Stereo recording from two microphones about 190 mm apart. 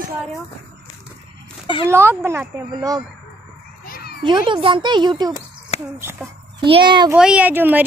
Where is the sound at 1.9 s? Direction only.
10° right (ahead or behind).